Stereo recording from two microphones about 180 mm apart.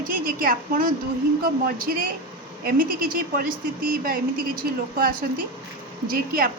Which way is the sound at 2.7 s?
55° right (ahead or behind).